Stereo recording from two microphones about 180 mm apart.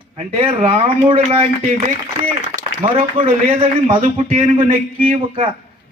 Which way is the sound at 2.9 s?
30° right (ahead or behind).